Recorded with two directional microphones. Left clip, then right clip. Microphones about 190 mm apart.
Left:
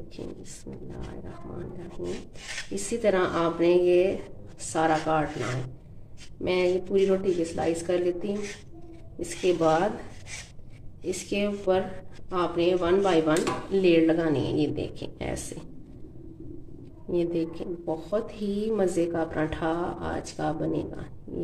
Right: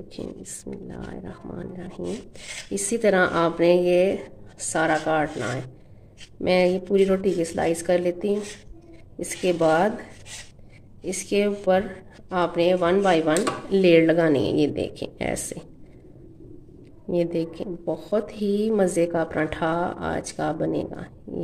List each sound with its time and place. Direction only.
0.2 s a woman's voice: 40° right (ahead or behind)
11.2 s a woman's voice: 40° right (ahead or behind)
17.1 s a woman's voice: 40° right (ahead or behind)